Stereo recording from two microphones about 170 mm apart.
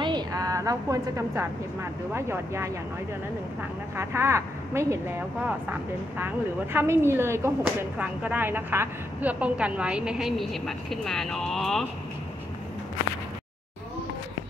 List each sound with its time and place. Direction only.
0.0 s a woman's voice: 25° right (ahead or behind)
3.9 s a woman's voice: 15° right (ahead or behind); by 11.8 s centre (ahead or behind)